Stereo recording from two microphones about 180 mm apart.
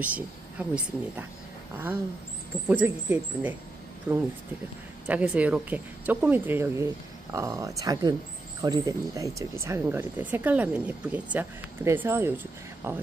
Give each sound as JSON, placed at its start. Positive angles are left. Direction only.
{"t": 0.0, "sound": "speech", "side_deg": -10}
{"t": 2.7, "sound": "speech", "side_deg": -10}